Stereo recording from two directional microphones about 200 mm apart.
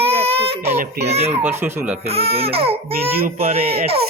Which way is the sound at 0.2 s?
30° right (ahead or behind).